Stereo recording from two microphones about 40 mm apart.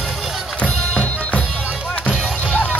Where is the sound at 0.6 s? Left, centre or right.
Left.